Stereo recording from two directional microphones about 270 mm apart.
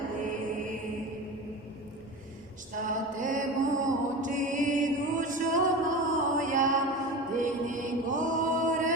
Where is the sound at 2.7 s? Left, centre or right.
Right.